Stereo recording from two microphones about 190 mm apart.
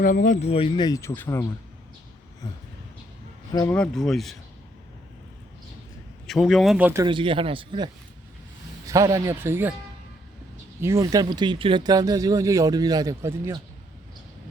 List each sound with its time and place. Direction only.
0.0 s speech: 45° left (ahead or behind); by 1.5 s 10° left (ahead or behind)
3.5 s speech: 20° left (ahead or behind)
3.8 s speech: centre (ahead or behind)
6.2 s speech: centre (ahead or behind)
7.0 s speech: 25° right (ahead or behind)
8.9 s speech: 15° right (ahead or behind)
10.8 s speech: 15° right (ahead or behind)